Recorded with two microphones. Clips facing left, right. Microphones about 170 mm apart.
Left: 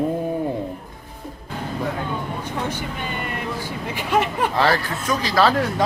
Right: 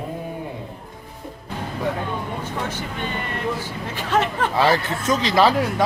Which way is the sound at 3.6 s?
10° left (ahead or behind).